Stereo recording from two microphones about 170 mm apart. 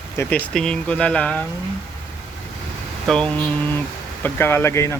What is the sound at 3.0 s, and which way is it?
Speech, 5° left (ahead or behind).